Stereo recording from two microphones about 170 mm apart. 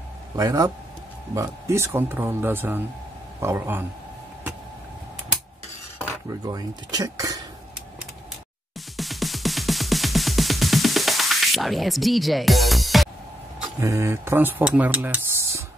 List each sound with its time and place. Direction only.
0.4 s speech: 20° right (ahead or behind)
6.2 s speech: 20° right (ahead or behind)
8.9 s music: centre (ahead or behind)
13.7 s speech: 15° right (ahead or behind)